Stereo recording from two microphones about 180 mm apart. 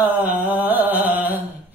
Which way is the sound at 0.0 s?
10° right (ahead or behind).